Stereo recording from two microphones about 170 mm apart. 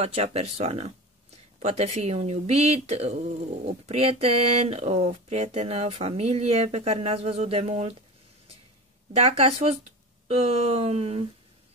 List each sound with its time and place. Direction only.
0.0 s speech: 35° right (ahead or behind)
9.1 s speech: 35° right (ahead or behind)